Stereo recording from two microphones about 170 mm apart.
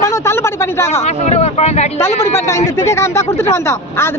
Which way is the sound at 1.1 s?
40° left (ahead or behind).